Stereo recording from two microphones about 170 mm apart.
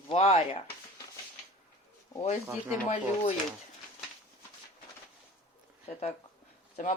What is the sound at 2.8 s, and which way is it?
Speech, 45° left (ahead or behind).